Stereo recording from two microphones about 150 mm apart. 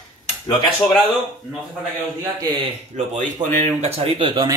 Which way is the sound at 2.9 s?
50° right (ahead or behind).